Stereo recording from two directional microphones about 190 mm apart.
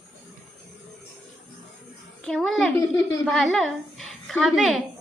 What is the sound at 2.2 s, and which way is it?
A child's voice, centre (ahead or behind).